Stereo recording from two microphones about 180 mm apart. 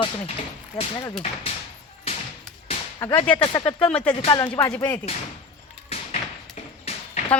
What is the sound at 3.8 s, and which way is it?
Speech, 5° left (ahead or behind).